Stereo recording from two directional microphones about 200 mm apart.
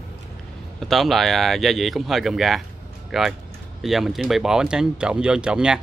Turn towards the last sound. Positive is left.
turn(degrees=-5)  # may be behind; listen again after turning